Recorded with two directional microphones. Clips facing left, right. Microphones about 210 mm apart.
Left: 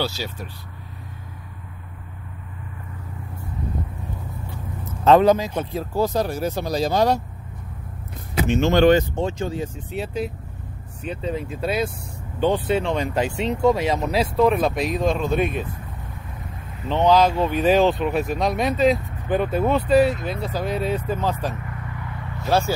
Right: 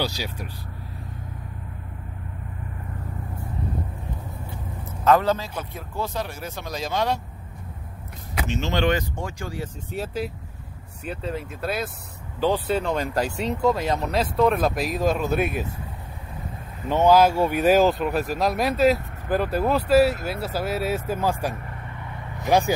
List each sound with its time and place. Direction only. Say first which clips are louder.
0.0 s speech: left 1 dB; 15° right (ahead or behind)
5.2 s speech: left 7 dB; 15° left (ahead or behind)
5.6 s speech: left 8 dB; 30° left (ahead or behind)
8.5 s speech: left 8 dB; 50° left (ahead or behind)
8.9 s speech: left 8 dB; 20° left (ahead or behind)
11.1 s speech: left 3 dB; centre (ahead or behind)
16.8 s speech: even; 10° right (ahead or behind)